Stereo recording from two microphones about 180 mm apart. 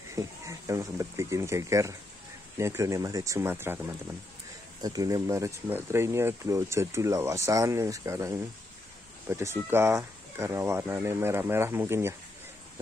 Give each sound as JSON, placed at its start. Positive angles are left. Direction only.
{"t": 0.1, "sound": "speech", "side_deg": -15}
{"t": 4.8, "sound": "speech", "side_deg": -20}